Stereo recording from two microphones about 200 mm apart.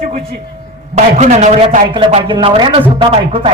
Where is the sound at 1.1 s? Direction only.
35° right (ahead or behind).